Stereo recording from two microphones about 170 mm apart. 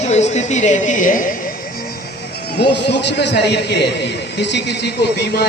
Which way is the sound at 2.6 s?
85° left.